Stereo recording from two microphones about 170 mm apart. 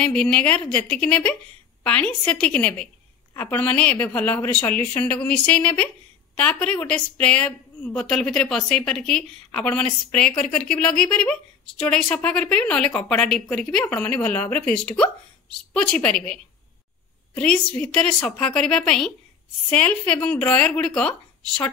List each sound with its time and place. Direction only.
0.0 s a woman's voice: 5° left (ahead or behind)
17.4 s a woman's voice: 5° left (ahead or behind)